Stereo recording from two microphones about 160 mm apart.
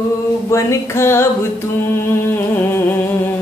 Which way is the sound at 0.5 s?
20° left (ahead or behind).